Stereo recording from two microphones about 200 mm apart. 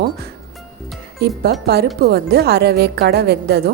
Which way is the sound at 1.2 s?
50° right (ahead or behind).